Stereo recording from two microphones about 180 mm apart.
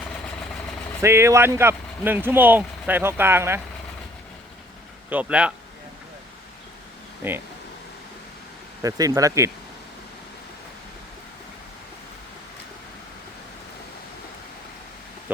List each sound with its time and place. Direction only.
1.0 s speech: 15° right (ahead or behind)
5.0 s speech: 10° right (ahead or behind)
7.2 s speech: 10° right (ahead or behind)
8.8 s speech: 20° right (ahead or behind)